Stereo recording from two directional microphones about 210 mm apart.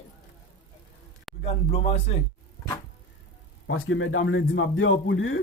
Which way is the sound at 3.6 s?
70° left (ahead or behind).